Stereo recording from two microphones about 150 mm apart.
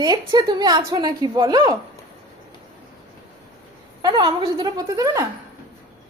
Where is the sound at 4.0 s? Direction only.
30° right (ahead or behind).